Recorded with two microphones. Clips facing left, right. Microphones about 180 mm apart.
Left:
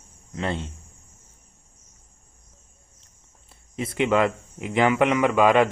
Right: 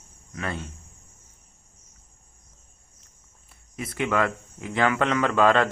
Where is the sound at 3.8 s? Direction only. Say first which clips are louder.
Left 4 dB; 25° left (ahead or behind).